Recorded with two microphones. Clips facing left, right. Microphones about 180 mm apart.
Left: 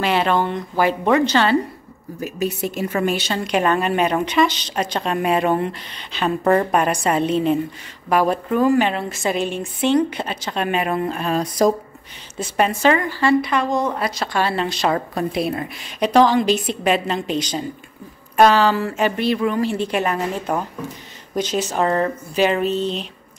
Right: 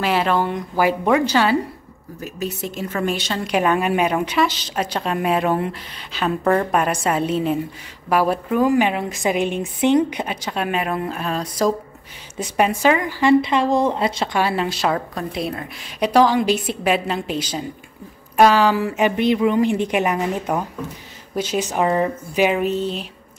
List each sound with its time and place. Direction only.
0.0 s a woman's voice: centre (ahead or behind)
2.2 s a woman's voice: 10° left (ahead or behind)
6.4 s a woman's voice: 10° left (ahead or behind)
6.8 s a woman's voice: 5° right (ahead or behind)
11.3 s a woman's voice: 15° left (ahead or behind)
12.4 s a woman's voice: 15° right (ahead or behind); by 15.9 s 5° left (ahead or behind)
16.0 s a woman's voice: 10° right (ahead or behind)